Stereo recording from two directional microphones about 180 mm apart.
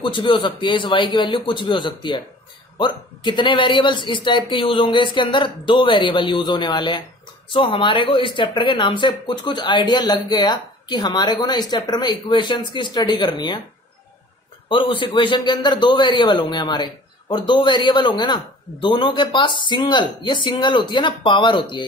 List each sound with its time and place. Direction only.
0.0 s a man's voice: 25° left (ahead or behind)
14.7 s a man's voice: 30° left (ahead or behind)